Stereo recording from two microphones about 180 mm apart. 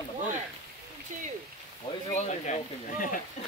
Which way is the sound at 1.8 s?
40° left (ahead or behind).